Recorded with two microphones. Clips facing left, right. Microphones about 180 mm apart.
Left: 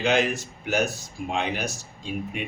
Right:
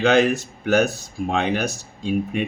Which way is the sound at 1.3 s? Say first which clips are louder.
Right 6 dB; 65° right (ahead or behind).